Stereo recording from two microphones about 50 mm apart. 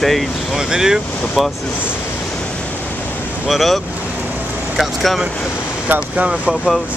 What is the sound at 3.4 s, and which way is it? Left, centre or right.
Speech, centre.